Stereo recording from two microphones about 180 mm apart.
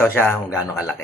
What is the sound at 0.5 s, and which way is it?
Speech, 5° right (ahead or behind).